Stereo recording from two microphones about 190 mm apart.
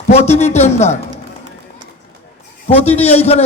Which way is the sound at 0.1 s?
35° left (ahead or behind).